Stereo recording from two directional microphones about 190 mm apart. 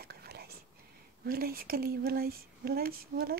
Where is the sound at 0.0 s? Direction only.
55° right (ahead or behind).